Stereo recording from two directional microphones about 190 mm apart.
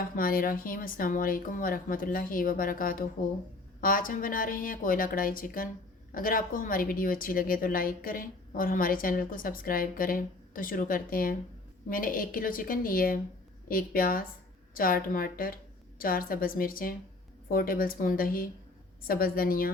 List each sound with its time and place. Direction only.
0.2 s a woman's voice: 50° left (ahead or behind)